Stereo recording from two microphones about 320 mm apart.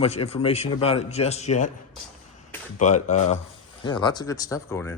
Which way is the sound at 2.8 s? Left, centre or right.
Left.